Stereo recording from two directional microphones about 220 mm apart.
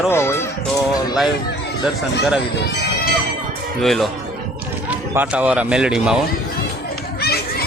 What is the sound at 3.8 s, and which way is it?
Speech, centre (ahead or behind).